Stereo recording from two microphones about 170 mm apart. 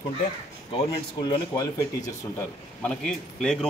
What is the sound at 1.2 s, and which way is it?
Speech, 25° left (ahead or behind).